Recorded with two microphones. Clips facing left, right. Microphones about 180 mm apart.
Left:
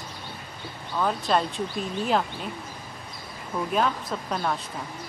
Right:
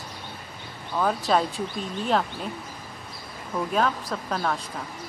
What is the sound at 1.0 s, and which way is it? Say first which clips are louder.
Speech: right 1 dB; centre (ahead or behind).